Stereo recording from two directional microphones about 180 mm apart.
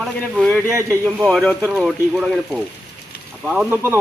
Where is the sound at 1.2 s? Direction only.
Centre (ahead or behind).